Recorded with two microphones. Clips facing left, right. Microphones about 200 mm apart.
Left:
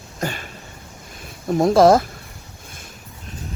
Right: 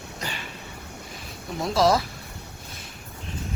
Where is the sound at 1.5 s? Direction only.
50° left (ahead or behind).